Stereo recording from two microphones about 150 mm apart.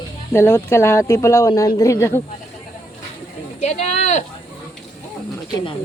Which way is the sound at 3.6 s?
50° left (ahead or behind).